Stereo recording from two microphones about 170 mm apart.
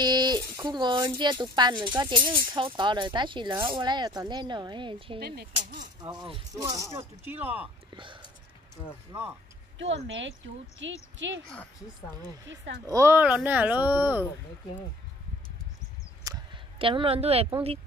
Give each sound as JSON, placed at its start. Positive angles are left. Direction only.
{"t": 0.0, "sound": "speech", "side_deg": -25}
{"t": 5.2, "sound": "speech", "side_deg": -65}
{"t": 5.9, "sound": "speech", "side_deg": -25}
{"t": 7.9, "sound": "whispering", "side_deg": -25}
{"t": 9.8, "sound": "speech", "side_deg": -90}
{"t": 12.4, "sound": "speech", "side_deg": -90}
{"t": 12.8, "sound": "speech", "side_deg": -15}
{"t": 16.7, "sound": "a woman's voice", "side_deg": -30}